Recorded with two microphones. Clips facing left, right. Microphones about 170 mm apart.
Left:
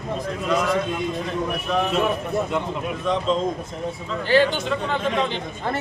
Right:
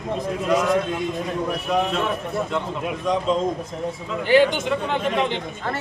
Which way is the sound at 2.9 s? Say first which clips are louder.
Right 1 dB; 10° right (ahead or behind).